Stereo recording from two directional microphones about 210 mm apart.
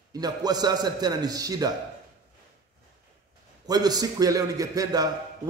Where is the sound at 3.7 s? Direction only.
20° right (ahead or behind).